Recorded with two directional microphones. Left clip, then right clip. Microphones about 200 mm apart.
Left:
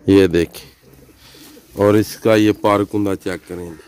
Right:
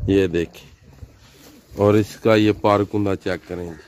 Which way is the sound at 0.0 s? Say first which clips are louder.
Left 6 dB; 30° left (ahead or behind).